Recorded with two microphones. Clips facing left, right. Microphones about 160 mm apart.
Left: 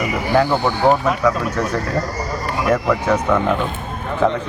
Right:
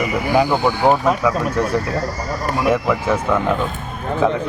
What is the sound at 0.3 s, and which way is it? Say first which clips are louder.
Speech: even; 10° right (ahead or behind).